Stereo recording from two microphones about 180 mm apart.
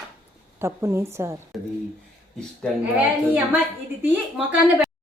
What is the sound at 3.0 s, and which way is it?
A woman's voice, 10° right (ahead or behind).